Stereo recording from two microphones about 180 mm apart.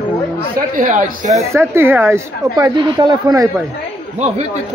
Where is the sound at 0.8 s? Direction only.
45° right (ahead or behind).